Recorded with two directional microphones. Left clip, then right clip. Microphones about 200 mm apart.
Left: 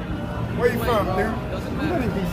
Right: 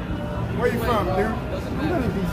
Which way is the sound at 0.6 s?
55° left (ahead or behind).